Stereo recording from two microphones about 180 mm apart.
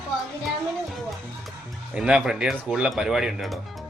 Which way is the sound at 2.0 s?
5° right (ahead or behind).